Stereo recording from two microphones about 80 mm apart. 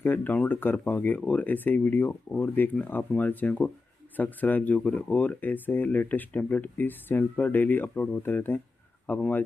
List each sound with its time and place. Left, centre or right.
0.0 s speech: left